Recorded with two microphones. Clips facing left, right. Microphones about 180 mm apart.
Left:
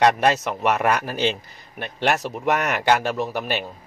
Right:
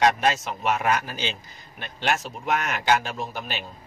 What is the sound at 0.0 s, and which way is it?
A man's voice, 65° left (ahead or behind).